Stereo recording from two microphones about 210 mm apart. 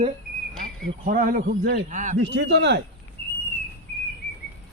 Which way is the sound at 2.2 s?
55° right (ahead or behind).